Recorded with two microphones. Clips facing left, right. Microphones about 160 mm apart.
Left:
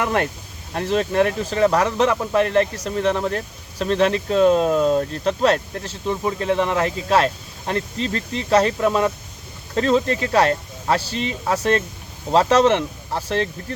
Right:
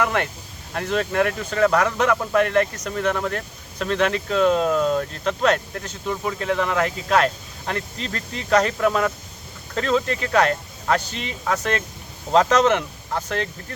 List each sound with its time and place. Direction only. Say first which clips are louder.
0.0 s speech: left 1 dB; 35° left (ahead or behind)